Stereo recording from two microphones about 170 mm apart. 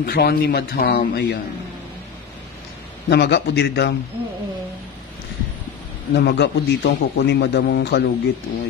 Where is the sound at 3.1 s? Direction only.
75° left (ahead or behind).